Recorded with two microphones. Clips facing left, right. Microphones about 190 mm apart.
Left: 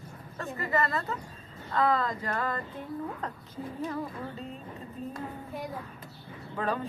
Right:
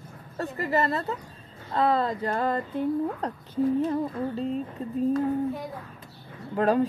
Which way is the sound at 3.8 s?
30° right (ahead or behind).